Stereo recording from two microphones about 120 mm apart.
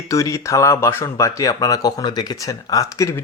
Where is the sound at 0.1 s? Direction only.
25° left (ahead or behind).